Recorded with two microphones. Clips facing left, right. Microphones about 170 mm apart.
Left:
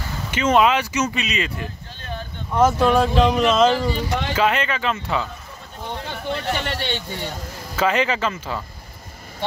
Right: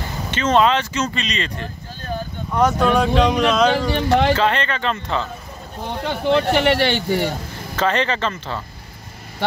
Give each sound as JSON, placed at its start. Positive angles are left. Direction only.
{"t": 0.3, "sound": "speech", "side_deg": 10}
{"t": 2.0, "sound": "a sound", "side_deg": -40}
{"t": 2.5, "sound": "speech", "side_deg": 5}
{"t": 3.9, "sound": "speech", "side_deg": -75}
{"t": 4.4, "sound": "speech", "side_deg": 5}
{"t": 6.0, "sound": "speech", "side_deg": -80}
{"t": 7.7, "sound": "speech", "side_deg": 5}